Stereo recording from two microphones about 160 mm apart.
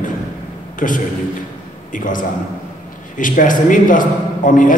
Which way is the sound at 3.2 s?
55° left (ahead or behind).